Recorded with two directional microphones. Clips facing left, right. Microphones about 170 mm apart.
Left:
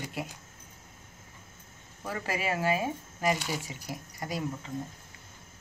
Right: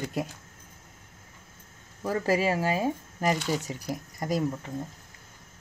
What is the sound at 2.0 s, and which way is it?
Speech, 40° right (ahead or behind).